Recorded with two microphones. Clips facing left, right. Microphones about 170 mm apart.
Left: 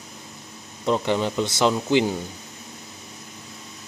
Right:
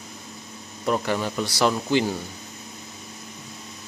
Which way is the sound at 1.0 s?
20° left (ahead or behind).